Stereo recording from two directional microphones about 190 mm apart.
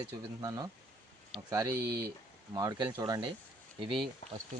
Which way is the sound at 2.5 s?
20° right (ahead or behind).